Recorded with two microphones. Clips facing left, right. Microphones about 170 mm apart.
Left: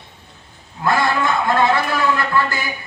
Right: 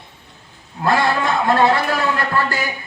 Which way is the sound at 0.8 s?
35° right (ahead or behind).